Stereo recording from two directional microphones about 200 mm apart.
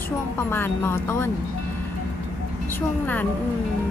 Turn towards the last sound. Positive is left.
turn(degrees=10)  # may be behind; listen again after turning